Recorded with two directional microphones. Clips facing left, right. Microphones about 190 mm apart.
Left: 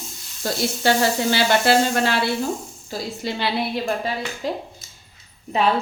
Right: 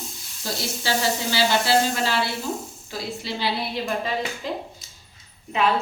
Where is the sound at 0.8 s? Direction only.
55° left (ahead or behind).